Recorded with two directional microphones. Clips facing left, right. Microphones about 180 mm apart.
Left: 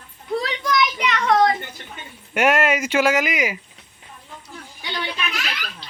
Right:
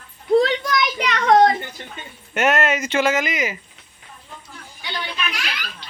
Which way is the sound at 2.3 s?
10° left (ahead or behind).